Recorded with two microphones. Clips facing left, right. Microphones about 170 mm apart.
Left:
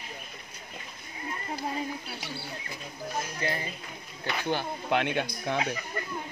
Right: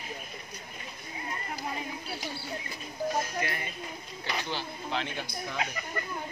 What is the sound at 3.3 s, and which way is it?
Speech, 30° left (ahead or behind).